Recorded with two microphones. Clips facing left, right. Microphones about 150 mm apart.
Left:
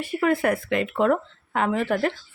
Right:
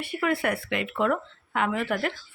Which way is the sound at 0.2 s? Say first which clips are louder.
Left 4 dB; 40° left (ahead or behind).